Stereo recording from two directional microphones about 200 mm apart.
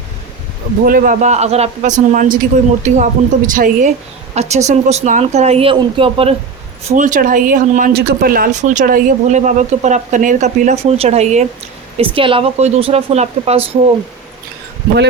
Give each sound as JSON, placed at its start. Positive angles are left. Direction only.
{"t": 0.9, "sound": "speech", "side_deg": -45}
{"t": 6.8, "sound": "speech", "side_deg": -40}
{"t": 7.9, "sound": "speech", "side_deg": -50}